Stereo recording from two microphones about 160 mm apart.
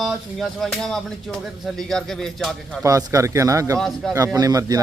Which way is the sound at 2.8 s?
20° right (ahead or behind).